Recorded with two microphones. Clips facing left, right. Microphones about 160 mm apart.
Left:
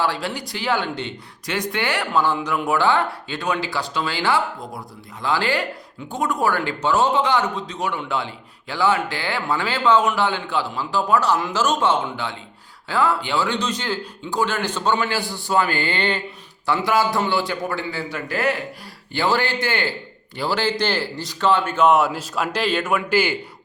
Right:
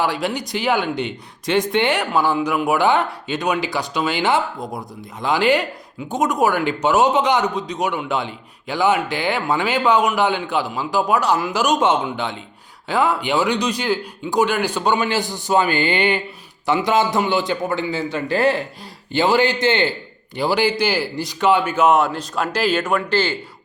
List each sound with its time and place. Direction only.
0.0 s speech: 15° right (ahead or behind)
2.1 s a man's voice: 10° right (ahead or behind); by 18.6 s 30° right (ahead or behind)
19.1 s a man's voice: 20° right (ahead or behind); by 23.4 s 10° left (ahead or behind)